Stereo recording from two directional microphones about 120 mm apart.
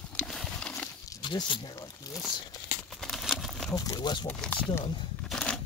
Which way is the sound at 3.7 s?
30° left (ahead or behind).